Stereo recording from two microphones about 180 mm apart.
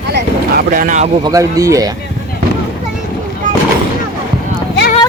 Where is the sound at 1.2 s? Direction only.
20° right (ahead or behind).